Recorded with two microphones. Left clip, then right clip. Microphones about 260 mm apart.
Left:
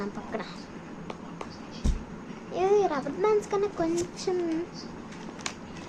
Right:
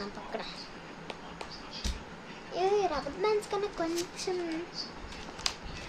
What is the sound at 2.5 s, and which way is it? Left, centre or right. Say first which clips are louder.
A woman's voice: left 4 dB; centre.